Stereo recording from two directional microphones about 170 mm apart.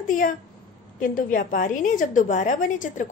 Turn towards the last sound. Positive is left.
turn(degrees=45)  # may be behind; listen again after turning